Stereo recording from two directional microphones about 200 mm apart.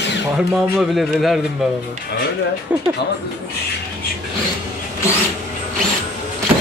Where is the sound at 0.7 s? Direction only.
Centre (ahead or behind).